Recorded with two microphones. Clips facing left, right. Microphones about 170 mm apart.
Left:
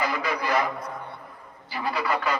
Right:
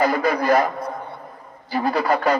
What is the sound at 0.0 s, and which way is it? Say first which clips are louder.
Speech: right 8 dB; 45° right (ahead or behind).